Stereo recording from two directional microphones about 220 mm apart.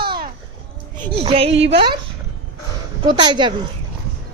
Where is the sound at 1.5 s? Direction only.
50° right (ahead or behind).